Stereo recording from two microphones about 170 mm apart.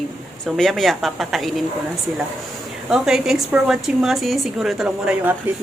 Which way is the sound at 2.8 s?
5° right (ahead or behind).